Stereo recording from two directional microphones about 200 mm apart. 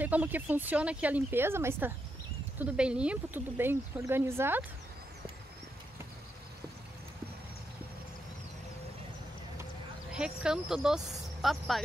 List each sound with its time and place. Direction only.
0.0 s speech: 10° right (ahead or behind)
10.1 s speech: 5° right (ahead or behind)